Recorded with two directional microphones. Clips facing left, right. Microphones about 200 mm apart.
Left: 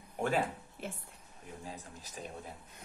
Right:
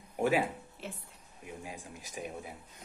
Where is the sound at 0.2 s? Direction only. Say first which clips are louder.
Right 3 dB; 10° right (ahead or behind).